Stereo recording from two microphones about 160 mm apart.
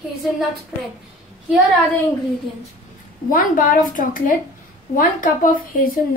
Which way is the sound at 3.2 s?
60° left (ahead or behind).